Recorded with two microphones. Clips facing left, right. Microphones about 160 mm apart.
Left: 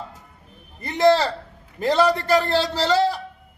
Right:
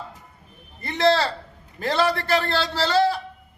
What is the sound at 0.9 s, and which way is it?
A man's voice, 15° left (ahead or behind).